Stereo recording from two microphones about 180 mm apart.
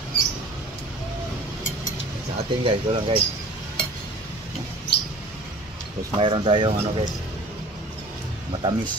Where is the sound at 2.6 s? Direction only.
30° right (ahead or behind).